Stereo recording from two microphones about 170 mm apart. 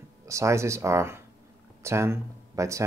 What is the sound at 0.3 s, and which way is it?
Speech, 15° right (ahead or behind).